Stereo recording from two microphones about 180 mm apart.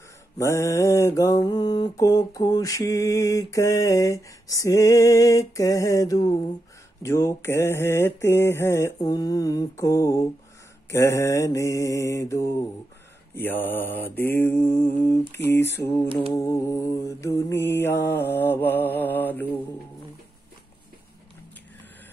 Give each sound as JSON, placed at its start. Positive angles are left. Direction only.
{"t": 0.4, "sound": "mantra", "side_deg": 15}